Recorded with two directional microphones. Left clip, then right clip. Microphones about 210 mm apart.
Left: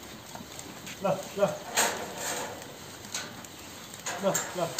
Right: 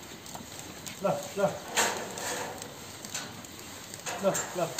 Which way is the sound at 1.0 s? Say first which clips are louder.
Left 1 dB; 20° left (ahead or behind).